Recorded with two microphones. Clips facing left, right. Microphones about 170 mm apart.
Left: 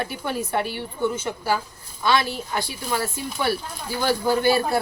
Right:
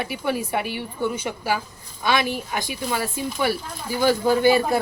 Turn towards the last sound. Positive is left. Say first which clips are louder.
# right 2 dB
turn(degrees=-20)  # may be behind; listen again after turning